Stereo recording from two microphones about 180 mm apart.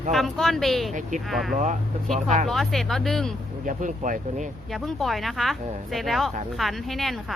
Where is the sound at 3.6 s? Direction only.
45° right (ahead or behind).